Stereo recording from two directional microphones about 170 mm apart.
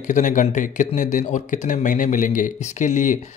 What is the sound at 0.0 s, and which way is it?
Speech, 50° left (ahead or behind).